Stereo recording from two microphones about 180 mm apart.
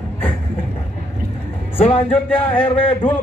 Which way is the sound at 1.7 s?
30° left (ahead or behind).